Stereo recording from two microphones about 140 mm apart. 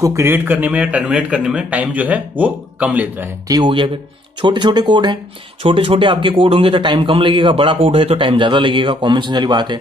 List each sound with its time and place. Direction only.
0.0 s a man's voice: 20° right (ahead or behind)
3.4 s a man's voice: 30° right (ahead or behind)